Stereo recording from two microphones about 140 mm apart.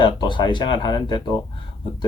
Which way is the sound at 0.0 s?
35° left (ahead or behind).